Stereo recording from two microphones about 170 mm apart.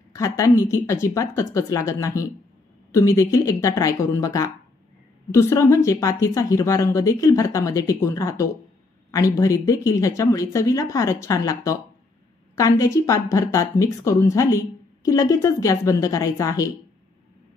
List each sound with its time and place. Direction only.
0.1 s speech: 20° left (ahead or behind)